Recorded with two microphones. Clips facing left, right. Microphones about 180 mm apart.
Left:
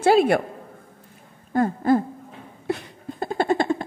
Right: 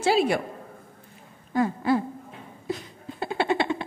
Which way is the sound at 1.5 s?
50° left (ahead or behind).